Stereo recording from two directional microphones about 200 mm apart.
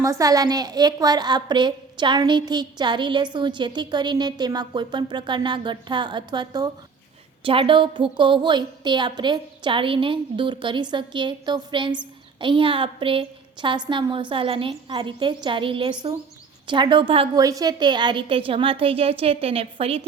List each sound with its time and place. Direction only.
0.0 s a woman's voice: 15° right (ahead or behind)